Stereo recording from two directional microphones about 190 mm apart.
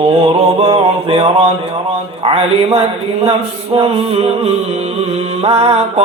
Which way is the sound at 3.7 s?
30° right (ahead or behind).